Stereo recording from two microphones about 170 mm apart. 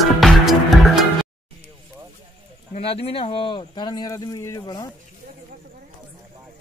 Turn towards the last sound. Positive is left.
turn(degrees=20)  # may be behind; listen again after turning